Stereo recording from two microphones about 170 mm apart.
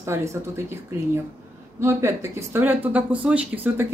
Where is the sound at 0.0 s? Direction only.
15° right (ahead or behind).